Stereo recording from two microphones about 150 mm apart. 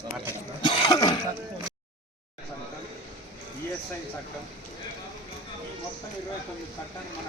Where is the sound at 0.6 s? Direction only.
30° left (ahead or behind).